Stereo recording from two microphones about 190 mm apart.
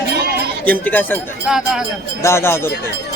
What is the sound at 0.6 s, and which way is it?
Speech, 10° left (ahead or behind).